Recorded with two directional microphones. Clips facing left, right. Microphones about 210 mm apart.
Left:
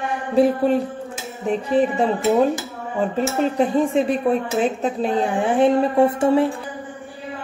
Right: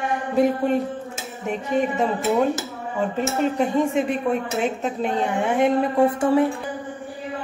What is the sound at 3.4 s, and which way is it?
A woman's voice, 35° left (ahead or behind).